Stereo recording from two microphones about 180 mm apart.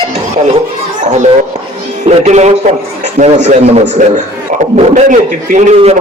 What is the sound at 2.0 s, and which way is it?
Music, 40° right (ahead or behind).